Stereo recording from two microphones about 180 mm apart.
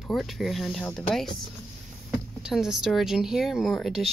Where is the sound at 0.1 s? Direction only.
Centre (ahead or behind).